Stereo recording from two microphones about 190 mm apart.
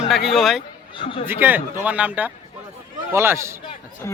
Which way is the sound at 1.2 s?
10° right (ahead or behind).